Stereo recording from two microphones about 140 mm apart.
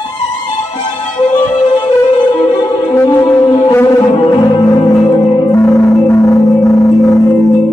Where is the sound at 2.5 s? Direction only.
30° left (ahead or behind).